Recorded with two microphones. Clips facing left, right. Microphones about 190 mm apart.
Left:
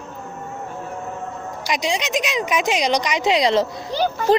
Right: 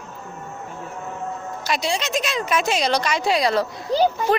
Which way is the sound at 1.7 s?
15° left (ahead or behind).